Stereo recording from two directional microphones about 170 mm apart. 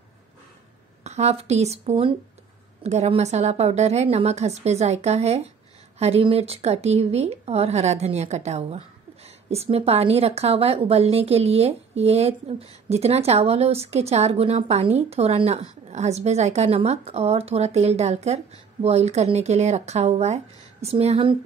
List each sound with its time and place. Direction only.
1.0 s speech: 40° right (ahead or behind)